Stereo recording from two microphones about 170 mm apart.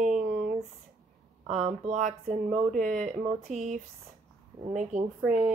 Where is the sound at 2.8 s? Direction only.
50° right (ahead or behind).